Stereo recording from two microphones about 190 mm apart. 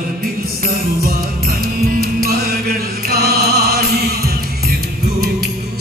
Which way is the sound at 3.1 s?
55° right (ahead or behind).